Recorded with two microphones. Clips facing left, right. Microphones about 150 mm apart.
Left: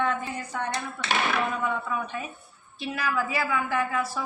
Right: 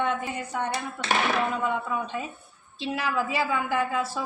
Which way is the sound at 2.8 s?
25° right (ahead or behind).